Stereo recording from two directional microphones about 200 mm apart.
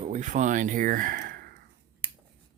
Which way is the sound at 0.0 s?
35° right (ahead or behind).